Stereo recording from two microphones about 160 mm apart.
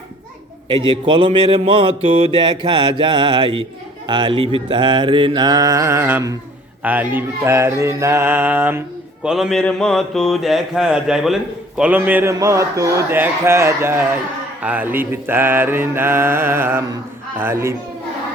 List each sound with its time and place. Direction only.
0.7 s speech: 30° right (ahead or behind)
4.0 s mantra: 30° right (ahead or behind); by 6.3 s 15° right (ahead or behind)
6.8 s speech: 10° right (ahead or behind)
9.2 s mantra: centre (ahead or behind)
11.8 s speech: 10° right (ahead or behind)